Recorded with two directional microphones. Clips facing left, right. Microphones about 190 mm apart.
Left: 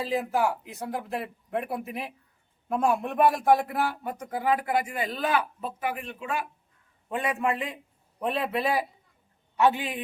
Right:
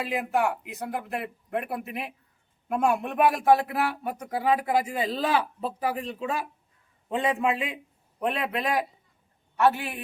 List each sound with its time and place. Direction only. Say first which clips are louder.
0.0 s speech: even; centre (ahead or behind)
4.6 s a man's voice: right 2 dB; 25° right (ahead or behind)
7.1 s a man's voice: right 2 dB; 20° right (ahead or behind)
8.2 s speech: left 1 dB; centre (ahead or behind)
9.6 s a man's voice: even; 15° left (ahead or behind)